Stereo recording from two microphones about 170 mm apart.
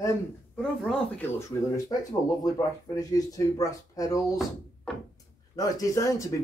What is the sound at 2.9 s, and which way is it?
Speech, 20° left (ahead or behind).